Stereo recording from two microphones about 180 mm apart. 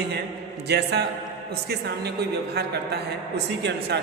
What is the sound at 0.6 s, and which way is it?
A woman's voice, 65° right (ahead or behind).